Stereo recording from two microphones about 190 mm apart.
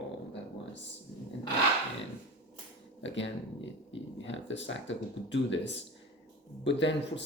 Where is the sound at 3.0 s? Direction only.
75° left (ahead or behind).